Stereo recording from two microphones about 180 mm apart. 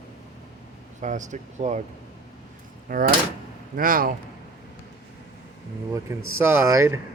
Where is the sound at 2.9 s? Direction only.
50° right (ahead or behind).